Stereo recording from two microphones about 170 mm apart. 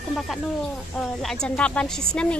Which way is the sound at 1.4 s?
5° left (ahead or behind).